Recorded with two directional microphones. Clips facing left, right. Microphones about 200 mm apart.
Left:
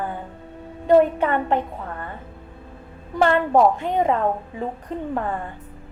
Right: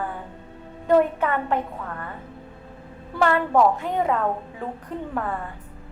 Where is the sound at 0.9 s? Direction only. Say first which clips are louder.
Left 3 dB; 25° left (ahead or behind).